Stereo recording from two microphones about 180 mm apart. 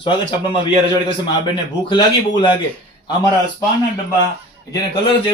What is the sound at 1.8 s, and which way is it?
Speech, 25° left (ahead or behind).